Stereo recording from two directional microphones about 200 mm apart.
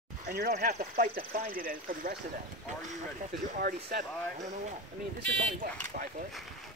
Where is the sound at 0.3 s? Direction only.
50° right (ahead or behind).